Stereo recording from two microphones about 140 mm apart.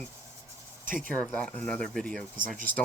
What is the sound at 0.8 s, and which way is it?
Speech, 75° right (ahead or behind).